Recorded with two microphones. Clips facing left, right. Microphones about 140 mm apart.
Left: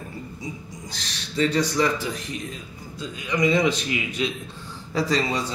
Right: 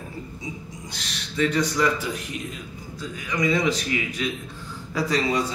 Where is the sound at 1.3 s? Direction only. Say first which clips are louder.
Left 1 dB; 30° left (ahead or behind).